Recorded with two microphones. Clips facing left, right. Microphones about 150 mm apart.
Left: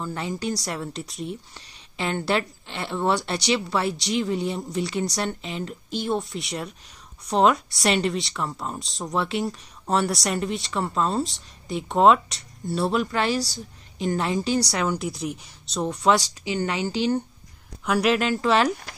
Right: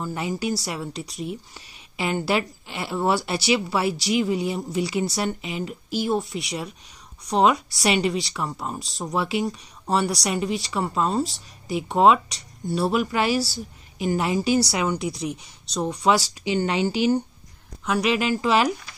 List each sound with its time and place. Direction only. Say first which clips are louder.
0.0 s a woman's voice: right 2 dB; 10° right (ahead or behind)
16.4 s a woman's voice: right 7 dB; 20° right (ahead or behind)
17.8 s a woman's voice: left 1 dB; centre (ahead or behind)